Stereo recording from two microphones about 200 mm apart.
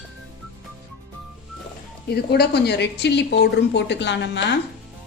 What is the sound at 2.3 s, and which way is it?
Speech, 55° left (ahead or behind).